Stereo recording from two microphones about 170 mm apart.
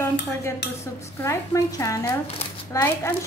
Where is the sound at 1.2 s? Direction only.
15° left (ahead or behind).